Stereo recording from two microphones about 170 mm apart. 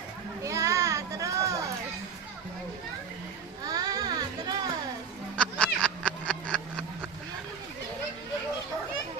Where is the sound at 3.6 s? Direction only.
20° right (ahead or behind).